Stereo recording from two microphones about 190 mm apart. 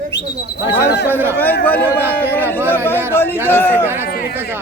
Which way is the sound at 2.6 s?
10° left (ahead or behind).